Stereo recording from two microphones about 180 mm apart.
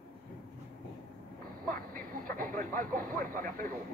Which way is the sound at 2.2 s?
50° right (ahead or behind).